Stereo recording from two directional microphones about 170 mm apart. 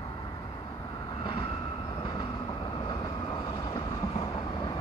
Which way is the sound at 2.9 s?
25° left (ahead or behind).